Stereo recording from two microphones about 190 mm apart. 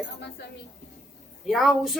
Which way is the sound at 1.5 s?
Centre (ahead or behind).